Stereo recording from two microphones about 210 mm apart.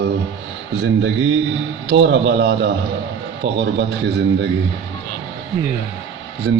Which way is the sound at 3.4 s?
25° right (ahead or behind).